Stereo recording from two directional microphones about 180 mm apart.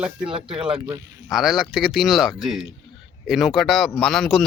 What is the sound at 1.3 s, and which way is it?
Speech, centre (ahead or behind).